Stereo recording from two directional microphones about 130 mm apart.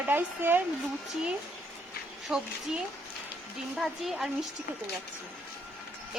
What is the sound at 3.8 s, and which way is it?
Speech, 5° right (ahead or behind).